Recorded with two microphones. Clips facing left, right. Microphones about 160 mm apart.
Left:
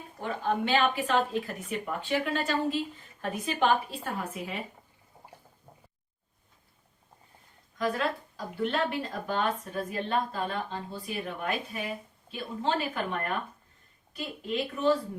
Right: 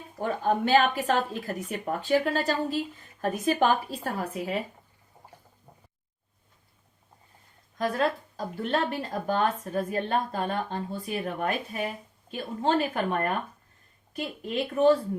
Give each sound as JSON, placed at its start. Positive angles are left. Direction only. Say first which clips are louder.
{"t": 0.2, "sound": "a woman's voice", "louder": "right 4 dB", "side_deg": -45}
{"t": 7.8, "sound": "speech", "louder": "right 3 dB", "side_deg": -40}